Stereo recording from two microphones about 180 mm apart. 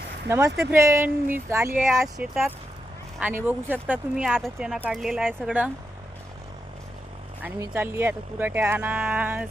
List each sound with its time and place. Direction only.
0.3 s speech: 15° right (ahead or behind)
1.9 s speech: centre (ahead or behind)
7.7 s speech: 10° right (ahead or behind)